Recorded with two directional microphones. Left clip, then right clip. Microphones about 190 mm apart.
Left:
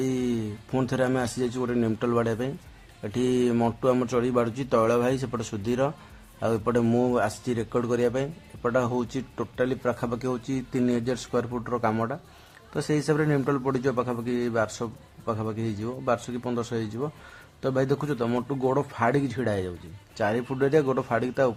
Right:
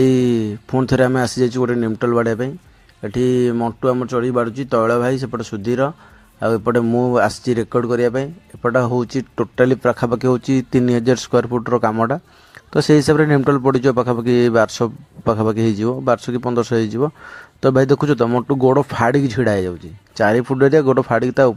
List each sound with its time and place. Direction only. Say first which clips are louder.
0.0 s a sound: right 13 dB; 35° right (ahead or behind)
0.9 s a man's voice: right 11 dB; 35° right (ahead or behind)
18.3 s a man's voice: right 10 dB; 25° right (ahead or behind)
18.5 s speech: right 11 dB; 35° right (ahead or behind)